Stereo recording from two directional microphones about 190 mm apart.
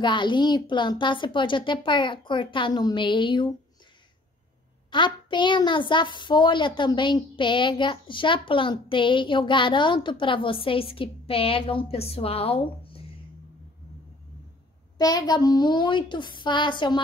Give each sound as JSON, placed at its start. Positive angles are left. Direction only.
{"t": 0.0, "sound": "a child's voice", "side_deg": 25}
{"t": 4.9, "sound": "a child's voice", "side_deg": 25}
{"t": 15.0, "sound": "a child's voice", "side_deg": 20}